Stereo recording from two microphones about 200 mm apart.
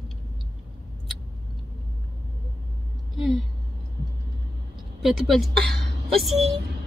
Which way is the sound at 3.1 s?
Centre (ahead or behind).